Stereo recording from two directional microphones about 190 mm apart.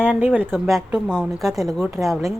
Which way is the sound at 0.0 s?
10° right (ahead or behind).